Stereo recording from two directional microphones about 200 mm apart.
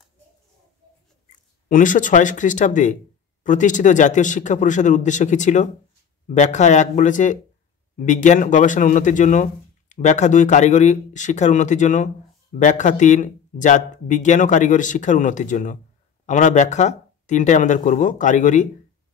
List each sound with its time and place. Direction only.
1.3 s speech: 40° left (ahead or behind)